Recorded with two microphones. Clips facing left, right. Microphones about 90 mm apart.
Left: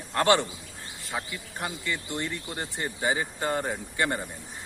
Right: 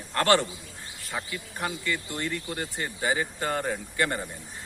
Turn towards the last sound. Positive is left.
turn(degrees=15)  # may be behind; listen again after turning